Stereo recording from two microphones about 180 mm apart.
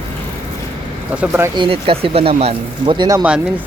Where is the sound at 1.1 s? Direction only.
10° right (ahead or behind).